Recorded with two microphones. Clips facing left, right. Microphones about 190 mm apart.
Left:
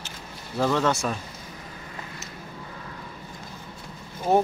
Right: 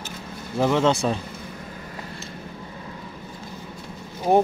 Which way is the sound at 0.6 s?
20° right (ahead or behind).